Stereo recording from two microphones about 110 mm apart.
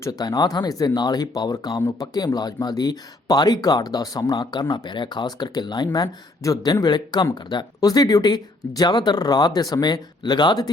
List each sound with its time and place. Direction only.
0.0 s speech: 35° left (ahead or behind)